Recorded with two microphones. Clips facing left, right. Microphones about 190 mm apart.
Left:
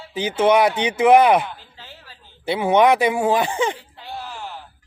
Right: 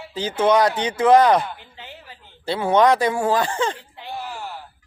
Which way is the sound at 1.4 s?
20° right (ahead or behind).